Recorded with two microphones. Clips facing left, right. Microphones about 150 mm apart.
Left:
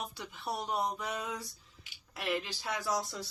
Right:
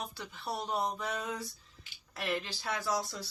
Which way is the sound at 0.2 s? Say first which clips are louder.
Even; 15° left (ahead or behind).